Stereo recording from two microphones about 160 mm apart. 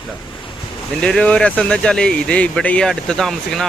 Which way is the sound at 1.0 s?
5° left (ahead or behind).